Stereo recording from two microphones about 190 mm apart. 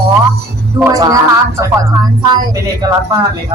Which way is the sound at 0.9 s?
20° right (ahead or behind).